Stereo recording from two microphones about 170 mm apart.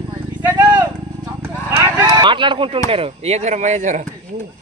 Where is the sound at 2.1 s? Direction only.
30° right (ahead or behind).